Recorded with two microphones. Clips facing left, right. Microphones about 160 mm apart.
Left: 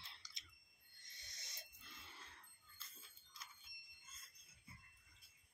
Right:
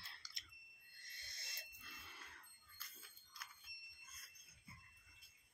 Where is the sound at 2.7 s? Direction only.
25° left (ahead or behind).